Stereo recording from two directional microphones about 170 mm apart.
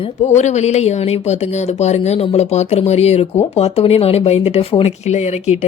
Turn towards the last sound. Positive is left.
turn(degrees=40)  # may be behind; listen again after turning